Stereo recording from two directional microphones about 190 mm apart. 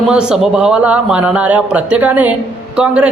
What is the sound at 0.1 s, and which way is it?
A woman's voice, 5° right (ahead or behind).